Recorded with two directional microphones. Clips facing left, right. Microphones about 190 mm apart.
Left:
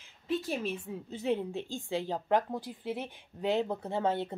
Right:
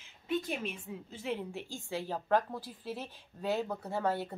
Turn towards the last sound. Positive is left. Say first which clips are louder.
# left 2 dB
turn(degrees=20)  # may be behind; listen again after turning